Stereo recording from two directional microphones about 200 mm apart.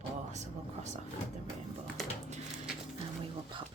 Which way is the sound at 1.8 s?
Centre (ahead or behind).